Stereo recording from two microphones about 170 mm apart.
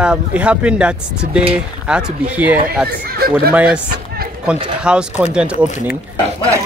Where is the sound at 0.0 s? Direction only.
5° right (ahead or behind).